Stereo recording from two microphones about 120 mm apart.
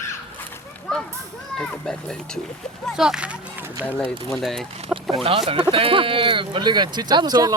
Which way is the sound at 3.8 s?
15° left (ahead or behind).